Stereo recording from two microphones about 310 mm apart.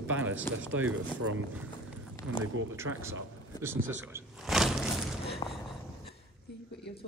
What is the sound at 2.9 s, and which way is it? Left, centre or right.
Speech, right.